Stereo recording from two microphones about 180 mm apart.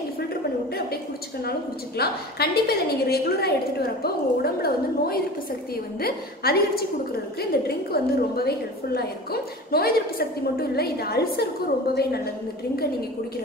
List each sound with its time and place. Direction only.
1.4 s a woman's voice: 60° left (ahead or behind)